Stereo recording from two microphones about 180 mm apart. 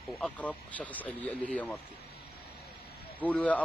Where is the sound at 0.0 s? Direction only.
10° left (ahead or behind).